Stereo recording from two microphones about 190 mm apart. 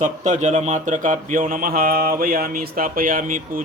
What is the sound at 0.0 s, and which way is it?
Speech, 40° right (ahead or behind).